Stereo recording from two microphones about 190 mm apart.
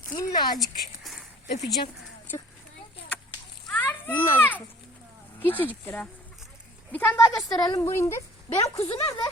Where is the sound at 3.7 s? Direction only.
10° left (ahead or behind).